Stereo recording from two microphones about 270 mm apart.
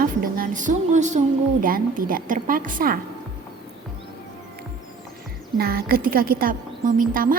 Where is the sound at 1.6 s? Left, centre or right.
Right.